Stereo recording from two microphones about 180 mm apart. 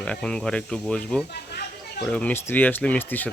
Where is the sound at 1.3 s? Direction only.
60° left (ahead or behind).